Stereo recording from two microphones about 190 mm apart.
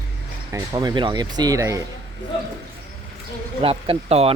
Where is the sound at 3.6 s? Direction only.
30° right (ahead or behind).